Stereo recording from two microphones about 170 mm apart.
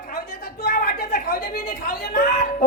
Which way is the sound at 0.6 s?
65° left (ahead or behind).